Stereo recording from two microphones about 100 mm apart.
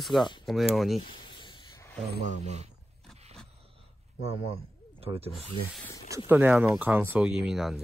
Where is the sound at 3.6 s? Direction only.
70° right (ahead or behind).